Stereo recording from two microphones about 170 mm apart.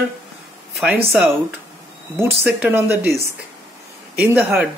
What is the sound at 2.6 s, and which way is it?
Speech, 10° right (ahead or behind).